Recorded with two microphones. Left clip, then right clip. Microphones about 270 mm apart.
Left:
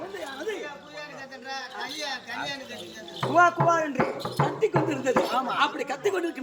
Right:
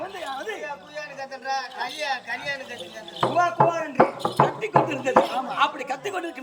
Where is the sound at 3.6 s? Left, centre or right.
Right.